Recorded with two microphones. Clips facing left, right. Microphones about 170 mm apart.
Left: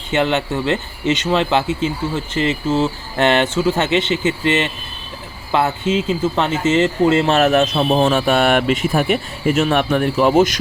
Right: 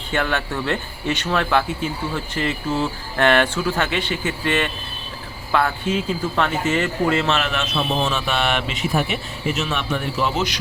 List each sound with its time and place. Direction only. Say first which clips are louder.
0.1 s speech: left 5 dB; 20° left (ahead or behind)
7.3 s speech: left 9 dB; 40° left (ahead or behind)
7.9 s speech: left 10 dB; 50° left (ahead or behind)